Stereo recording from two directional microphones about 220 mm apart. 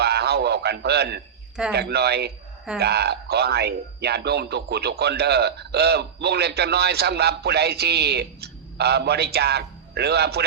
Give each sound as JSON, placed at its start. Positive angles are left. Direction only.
{"t": 0.0, "sound": "radio", "side_deg": -45}
{"t": 1.7, "sound": "speech", "side_deg": -45}